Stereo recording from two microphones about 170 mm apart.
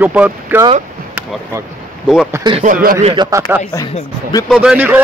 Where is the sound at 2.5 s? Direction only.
50° right (ahead or behind).